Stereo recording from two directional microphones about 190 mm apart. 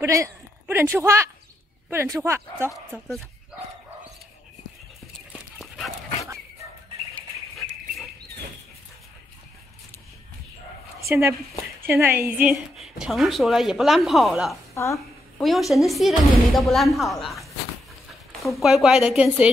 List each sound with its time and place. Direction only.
0.0 s speech: 15° right (ahead or behind)
2.7 s a woman's voice: centre (ahead or behind)
5.6 s dog: centre (ahead or behind)
11.1 s a woman's voice: 15° right (ahead or behind)
14.7 s a sound: 15° left (ahead or behind)
15.4 s a woman's voice: centre (ahead or behind)